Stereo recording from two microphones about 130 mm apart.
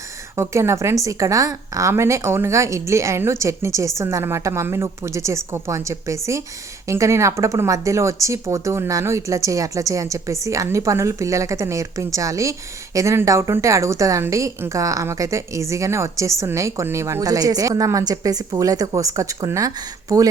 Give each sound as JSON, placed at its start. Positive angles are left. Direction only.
{"t": 0.3, "sound": "a woman's voice", "side_deg": -20}